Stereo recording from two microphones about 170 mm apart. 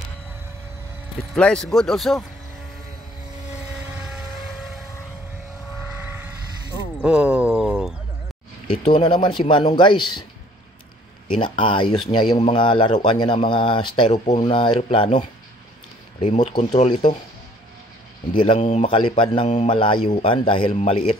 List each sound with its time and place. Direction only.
1.3 s speech: 5° left (ahead or behind)
3.7 s vehicle: 5° right (ahead or behind)
5.8 s vehicle: 10° right (ahead or behind)
7.0 s a sound: 5° right (ahead or behind)
8.6 s speech: 30° left (ahead or behind)
11.3 s speech: 30° left (ahead or behind)
14.1 s speech: 45° left (ahead or behind)
14.5 s a man's voice: 30° left (ahead or behind)
16.2 s a man's voice: 35° left (ahead or behind)
18.3 s a man's voice: 30° left (ahead or behind)
18.9 s a man's voice: 30° left (ahead or behind)